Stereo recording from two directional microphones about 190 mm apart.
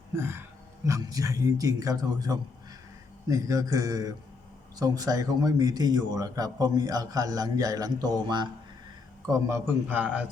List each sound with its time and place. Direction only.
0.2 s a man's voice: 10° right (ahead or behind)